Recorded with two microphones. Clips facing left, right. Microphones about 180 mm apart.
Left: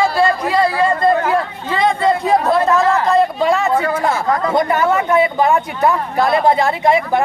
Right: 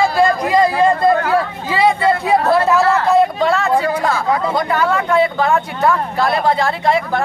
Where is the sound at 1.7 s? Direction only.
5° right (ahead or behind).